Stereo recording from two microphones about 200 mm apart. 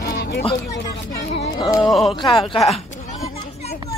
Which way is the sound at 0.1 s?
50° left (ahead or behind).